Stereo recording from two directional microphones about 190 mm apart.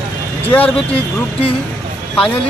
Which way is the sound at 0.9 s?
30° left (ahead or behind).